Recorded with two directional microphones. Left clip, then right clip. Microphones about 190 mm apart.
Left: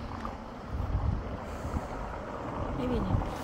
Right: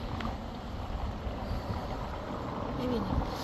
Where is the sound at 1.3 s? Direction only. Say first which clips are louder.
Even; 50° right (ahead or behind).